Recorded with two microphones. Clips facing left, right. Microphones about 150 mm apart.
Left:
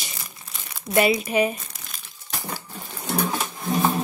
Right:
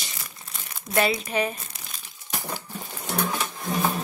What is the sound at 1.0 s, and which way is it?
Speech, 15° left (ahead or behind).